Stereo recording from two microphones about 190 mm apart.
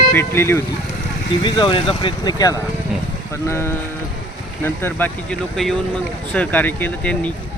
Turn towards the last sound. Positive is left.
turn(degrees=10)  # may be behind; listen again after turning